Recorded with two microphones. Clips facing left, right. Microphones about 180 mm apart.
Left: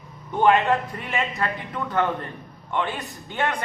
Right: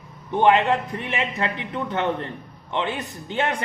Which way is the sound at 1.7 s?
25° right (ahead or behind).